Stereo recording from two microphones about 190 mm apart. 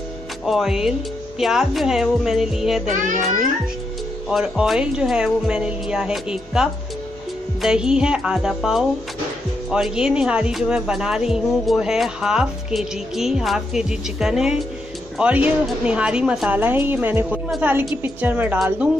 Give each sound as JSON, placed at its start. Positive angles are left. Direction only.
{"t": 0.5, "sound": "speech", "side_deg": 0}
{"t": 2.9, "sound": "a child's voice", "side_deg": -40}
{"t": 4.3, "sound": "a woman's voice", "side_deg": 0}